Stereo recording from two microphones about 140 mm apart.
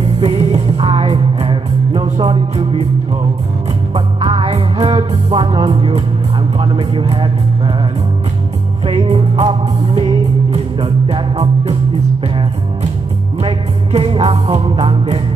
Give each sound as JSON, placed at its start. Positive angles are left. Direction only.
{"t": 0.2, "sound": "music", "side_deg": -40}
{"t": 3.9, "sound": "music", "side_deg": -40}
{"t": 5.1, "sound": "music", "side_deg": -35}
{"t": 6.6, "sound": "speech", "side_deg": -35}
{"t": 8.8, "sound": "music", "side_deg": -45}
{"t": 13.4, "sound": "music", "side_deg": -40}